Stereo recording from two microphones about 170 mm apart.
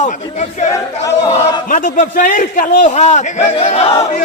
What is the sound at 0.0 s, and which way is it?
Speech, 40° left (ahead or behind).